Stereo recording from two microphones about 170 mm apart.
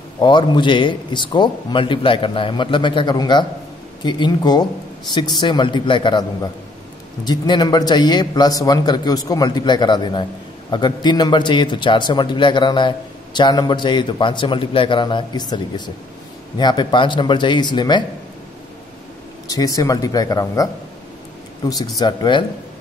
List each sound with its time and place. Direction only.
0.2 s a man's voice: 25° left (ahead or behind)
19.4 s a man's voice: 20° left (ahead or behind)